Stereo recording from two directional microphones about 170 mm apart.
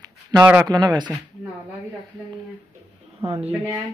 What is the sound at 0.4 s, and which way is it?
Speech, 10° right (ahead or behind).